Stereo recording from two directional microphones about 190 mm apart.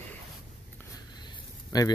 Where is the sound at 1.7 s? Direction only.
20° left (ahead or behind).